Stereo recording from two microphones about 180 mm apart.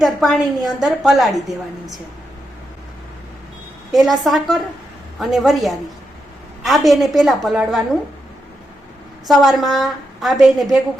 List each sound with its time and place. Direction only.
0.0 s a woman's voice: centre (ahead or behind)
3.9 s a woman's voice: centre (ahead or behind)
9.2 s a woman's voice: centre (ahead or behind)